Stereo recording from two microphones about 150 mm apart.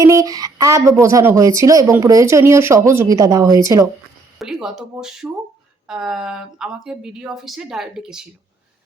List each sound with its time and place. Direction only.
0.0 s speech: 20° right (ahead or behind)
4.4 s speech: 5° right (ahead or behind)